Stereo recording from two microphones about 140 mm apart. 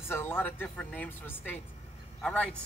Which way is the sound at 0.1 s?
15° left (ahead or behind).